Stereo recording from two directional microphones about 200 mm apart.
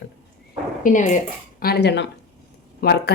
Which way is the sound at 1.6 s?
50° left (ahead or behind).